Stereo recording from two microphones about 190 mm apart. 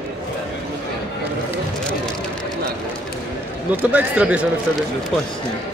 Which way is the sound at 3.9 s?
5° right (ahead or behind).